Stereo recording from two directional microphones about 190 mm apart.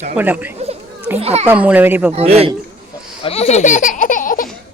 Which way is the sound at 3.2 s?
30° left (ahead or behind).